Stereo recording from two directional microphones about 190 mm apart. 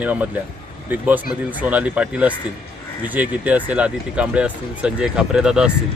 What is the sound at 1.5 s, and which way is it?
Speech, 10° right (ahead or behind).